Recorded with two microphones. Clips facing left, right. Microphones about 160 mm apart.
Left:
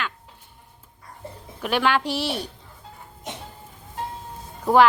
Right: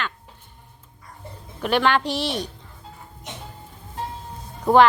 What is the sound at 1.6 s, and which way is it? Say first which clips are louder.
Speech: right 2 dB; 5° left (ahead or behind).